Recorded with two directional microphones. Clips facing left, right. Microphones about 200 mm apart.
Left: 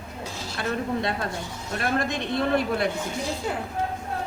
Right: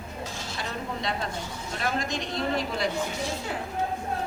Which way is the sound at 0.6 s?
55° left (ahead or behind).